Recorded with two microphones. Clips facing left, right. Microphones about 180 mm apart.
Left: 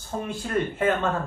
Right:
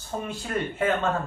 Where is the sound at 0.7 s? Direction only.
55° left (ahead or behind).